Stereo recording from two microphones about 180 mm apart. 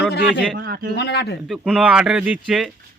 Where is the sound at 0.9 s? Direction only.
65° left (ahead or behind).